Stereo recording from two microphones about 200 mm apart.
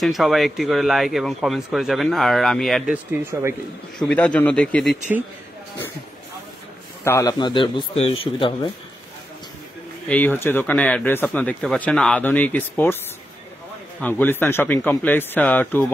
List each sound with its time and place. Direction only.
0.0 s speech: centre (ahead or behind)
4.0 s speech: 5° left (ahead or behind)
7.1 s a man's voice: 15° left (ahead or behind)
10.0 s speech: 10° left (ahead or behind)
14.0 s speech: 10° left (ahead or behind)